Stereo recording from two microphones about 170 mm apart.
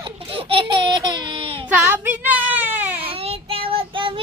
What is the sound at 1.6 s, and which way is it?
Child singing, 10° right (ahead or behind).